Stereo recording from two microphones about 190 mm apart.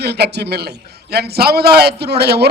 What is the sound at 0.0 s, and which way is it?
A man's voice, 60° right (ahead or behind).